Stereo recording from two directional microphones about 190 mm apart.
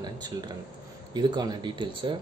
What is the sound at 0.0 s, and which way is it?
Speech, 20° right (ahead or behind).